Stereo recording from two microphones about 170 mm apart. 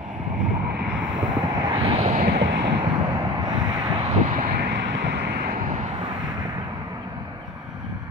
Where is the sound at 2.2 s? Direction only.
70° right (ahead or behind); by 2.7 s 90° right.